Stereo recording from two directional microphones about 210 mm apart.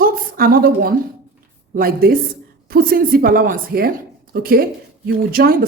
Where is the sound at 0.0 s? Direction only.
45° right (ahead or behind).